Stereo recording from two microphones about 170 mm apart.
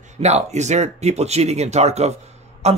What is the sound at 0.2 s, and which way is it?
Speech, 40° right (ahead or behind).